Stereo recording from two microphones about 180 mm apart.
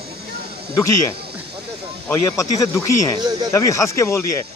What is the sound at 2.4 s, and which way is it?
Speech, 15° left (ahead or behind).